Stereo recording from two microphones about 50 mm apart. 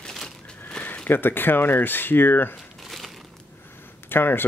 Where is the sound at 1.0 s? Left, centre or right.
Left.